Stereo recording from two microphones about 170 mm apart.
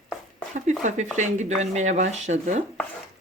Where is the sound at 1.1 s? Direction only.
45° right (ahead or behind).